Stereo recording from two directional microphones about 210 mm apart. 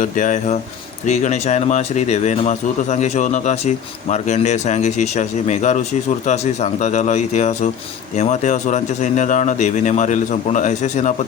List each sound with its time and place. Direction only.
0.0 s speech: 35° left (ahead or behind)